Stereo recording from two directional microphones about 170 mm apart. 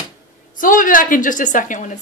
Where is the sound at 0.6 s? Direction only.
55° left (ahead or behind).